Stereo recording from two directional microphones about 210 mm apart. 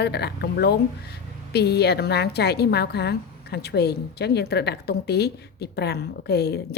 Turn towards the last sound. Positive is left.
turn(degrees=50)  # may be behind; listen again after turning